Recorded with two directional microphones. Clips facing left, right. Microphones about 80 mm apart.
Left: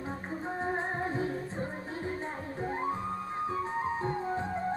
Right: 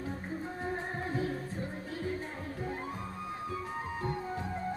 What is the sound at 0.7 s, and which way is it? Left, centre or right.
Music, left.